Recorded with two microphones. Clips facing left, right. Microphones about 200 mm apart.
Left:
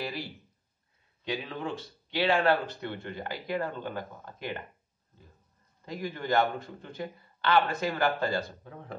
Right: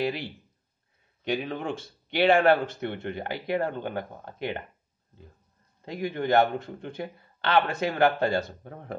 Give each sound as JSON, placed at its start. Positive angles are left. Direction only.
{"t": 1.2, "sound": "speech", "side_deg": -60}
{"t": 5.9, "sound": "speech", "side_deg": -60}